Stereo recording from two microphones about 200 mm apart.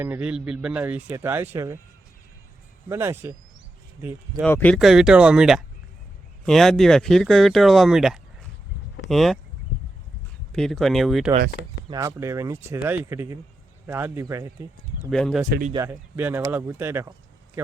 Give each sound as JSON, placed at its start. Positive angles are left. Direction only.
{"t": 0.0, "sound": "speech", "side_deg": -10}
{"t": 2.9, "sound": "speech", "side_deg": -10}
{"t": 4.4, "sound": "speech", "side_deg": 10}
{"t": 10.5, "sound": "speech", "side_deg": 0}
{"t": 11.9, "sound": "speech", "side_deg": -15}
{"t": 15.1, "sound": "speech", "side_deg": 0}
{"t": 15.4, "sound": "speech", "side_deg": -50}
{"t": 15.7, "sound": "speech", "side_deg": -15}